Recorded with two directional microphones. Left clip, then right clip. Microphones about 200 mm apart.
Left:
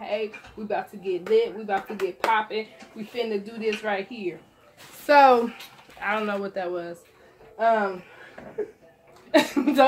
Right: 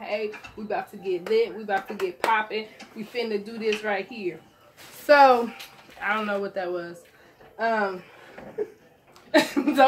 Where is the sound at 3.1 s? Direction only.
10° left (ahead or behind).